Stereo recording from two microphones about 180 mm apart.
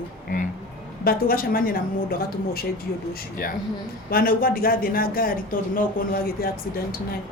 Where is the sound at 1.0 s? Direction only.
55° left (ahead or behind).